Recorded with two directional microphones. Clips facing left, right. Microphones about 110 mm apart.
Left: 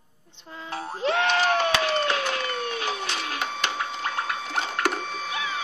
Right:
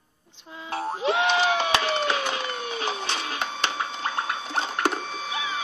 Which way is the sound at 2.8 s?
30° right (ahead or behind).